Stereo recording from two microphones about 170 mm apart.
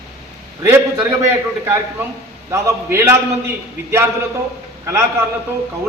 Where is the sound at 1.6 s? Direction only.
15° right (ahead or behind).